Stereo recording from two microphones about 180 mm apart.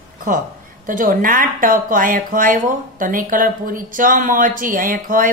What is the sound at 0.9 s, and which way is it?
Speech, 50° right (ahead or behind).